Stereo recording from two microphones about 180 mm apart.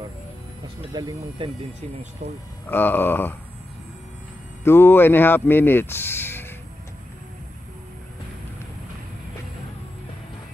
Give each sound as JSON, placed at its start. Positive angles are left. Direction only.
{"t": 0.9, "sound": "speech", "side_deg": -20}
{"t": 2.7, "sound": "speech", "side_deg": 10}
{"t": 4.6, "sound": "speech", "side_deg": 10}